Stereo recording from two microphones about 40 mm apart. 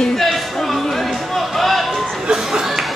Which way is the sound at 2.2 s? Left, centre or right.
Centre.